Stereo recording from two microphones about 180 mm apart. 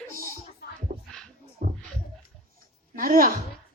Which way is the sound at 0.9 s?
55° right (ahead or behind).